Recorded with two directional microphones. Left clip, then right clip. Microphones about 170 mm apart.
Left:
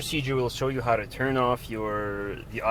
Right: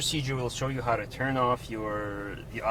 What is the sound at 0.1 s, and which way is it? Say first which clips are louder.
Speech: left 4 dB; 45° left (ahead or behind).